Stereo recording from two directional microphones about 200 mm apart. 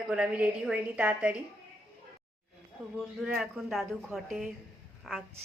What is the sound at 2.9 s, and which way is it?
A woman's voice, centre (ahead or behind).